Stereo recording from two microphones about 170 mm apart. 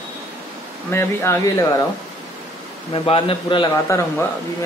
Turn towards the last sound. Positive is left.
turn(degrees=15)  # may be behind; listen again after turning